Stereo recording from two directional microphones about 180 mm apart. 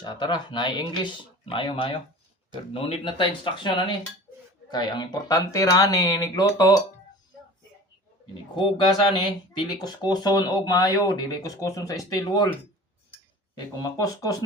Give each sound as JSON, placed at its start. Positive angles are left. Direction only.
{"t": 0.0, "sound": "speech", "side_deg": 25}
{"t": 8.5, "sound": "speech", "side_deg": 25}
{"t": 13.8, "sound": "speech", "side_deg": 20}